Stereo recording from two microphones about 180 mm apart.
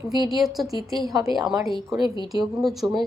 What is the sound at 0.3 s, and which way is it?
Speech, centre (ahead or behind).